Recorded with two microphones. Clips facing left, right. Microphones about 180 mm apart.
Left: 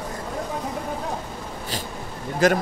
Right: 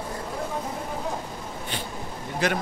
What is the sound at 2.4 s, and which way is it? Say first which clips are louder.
Speech: left 7 dB; 45° left (ahead or behind).